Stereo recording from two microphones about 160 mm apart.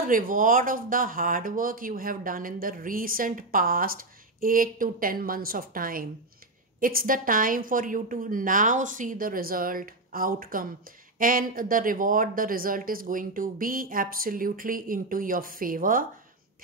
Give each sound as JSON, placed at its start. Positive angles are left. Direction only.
{"t": 0.1, "sound": "speech", "side_deg": -60}